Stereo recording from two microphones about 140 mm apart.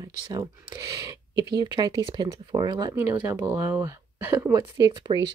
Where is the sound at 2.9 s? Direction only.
15° right (ahead or behind).